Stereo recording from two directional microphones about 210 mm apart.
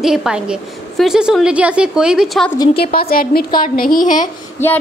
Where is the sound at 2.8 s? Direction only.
45° left (ahead or behind).